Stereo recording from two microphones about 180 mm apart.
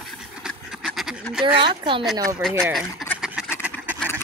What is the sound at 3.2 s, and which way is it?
Duck, centre (ahead or behind).